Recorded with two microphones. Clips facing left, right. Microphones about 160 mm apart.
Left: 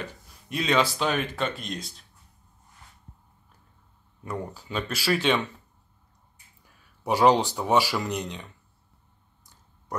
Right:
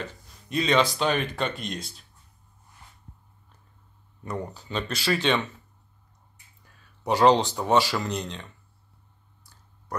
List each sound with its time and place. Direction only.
0.0 s speech: 5° left (ahead or behind)
4.2 s speech: 5° left (ahead or behind)
7.0 s speech: 10° left (ahead or behind)
9.4 s clicking: 20° left (ahead or behind)